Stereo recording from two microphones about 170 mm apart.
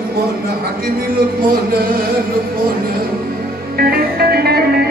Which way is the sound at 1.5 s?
60° right (ahead or behind).